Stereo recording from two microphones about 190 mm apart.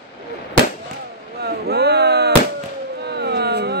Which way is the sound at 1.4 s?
60° right (ahead or behind).